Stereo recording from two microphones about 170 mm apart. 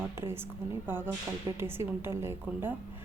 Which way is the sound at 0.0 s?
15° right (ahead or behind).